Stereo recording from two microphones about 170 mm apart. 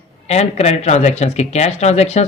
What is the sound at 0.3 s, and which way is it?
Speech, 40° left (ahead or behind).